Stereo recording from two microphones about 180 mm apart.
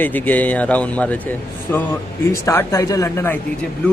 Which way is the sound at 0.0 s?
10° left (ahead or behind).